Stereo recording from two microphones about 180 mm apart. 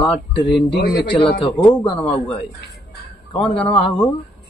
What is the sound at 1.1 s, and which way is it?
Speech, 30° left (ahead or behind).